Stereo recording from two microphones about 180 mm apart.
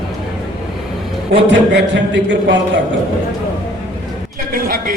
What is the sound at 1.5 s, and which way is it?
Speech, 85° right.